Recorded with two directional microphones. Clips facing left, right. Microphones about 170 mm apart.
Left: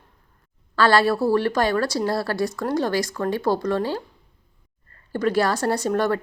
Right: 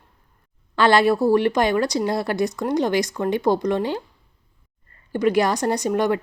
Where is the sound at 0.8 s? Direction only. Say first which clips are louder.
Right 2 dB; 20° right (ahead or behind).